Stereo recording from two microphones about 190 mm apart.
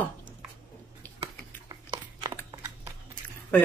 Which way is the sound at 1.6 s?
20° right (ahead or behind).